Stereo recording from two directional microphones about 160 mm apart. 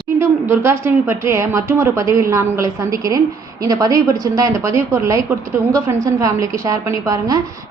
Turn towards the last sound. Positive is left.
turn(degrees=-20)  # may be behind; listen again after turning